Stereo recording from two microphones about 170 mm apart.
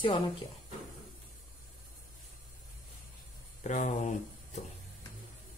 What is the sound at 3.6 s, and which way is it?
Speech, 45° left (ahead or behind).